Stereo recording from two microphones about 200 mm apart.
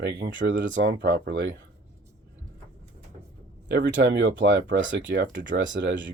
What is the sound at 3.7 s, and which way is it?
Speech, 65° right (ahead or behind).